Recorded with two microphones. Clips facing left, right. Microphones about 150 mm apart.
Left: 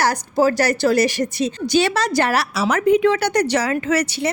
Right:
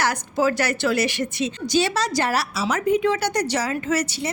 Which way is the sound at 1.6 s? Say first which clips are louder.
Left 3 dB; 60° left (ahead or behind).